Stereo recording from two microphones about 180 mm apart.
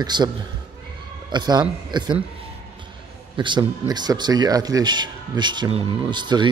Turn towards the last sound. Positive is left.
turn(degrees=-25)  # may be behind; listen again after turning